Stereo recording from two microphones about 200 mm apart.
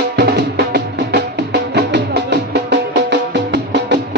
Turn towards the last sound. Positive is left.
turn(degrees=-60)  # may be behind; listen again after turning